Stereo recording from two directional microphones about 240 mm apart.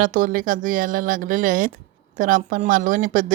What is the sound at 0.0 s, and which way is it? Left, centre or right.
Speech, right.